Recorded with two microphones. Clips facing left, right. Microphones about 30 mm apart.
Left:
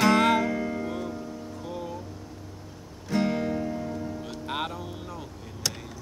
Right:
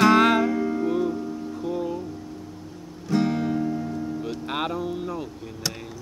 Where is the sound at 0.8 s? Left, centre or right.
Centre.